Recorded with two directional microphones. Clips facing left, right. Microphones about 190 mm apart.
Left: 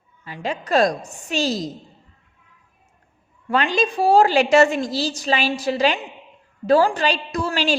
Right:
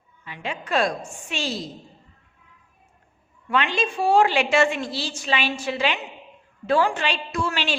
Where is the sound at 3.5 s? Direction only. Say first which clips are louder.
Left 4 dB; 40° left (ahead or behind).